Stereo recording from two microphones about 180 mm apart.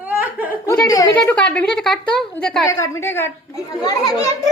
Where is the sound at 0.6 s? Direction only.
20° left (ahead or behind).